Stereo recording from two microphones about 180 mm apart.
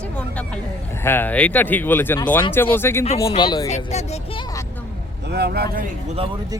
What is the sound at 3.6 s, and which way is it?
Speech, 40° left (ahead or behind).